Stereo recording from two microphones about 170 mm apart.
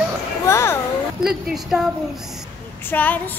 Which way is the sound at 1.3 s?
5° right (ahead or behind).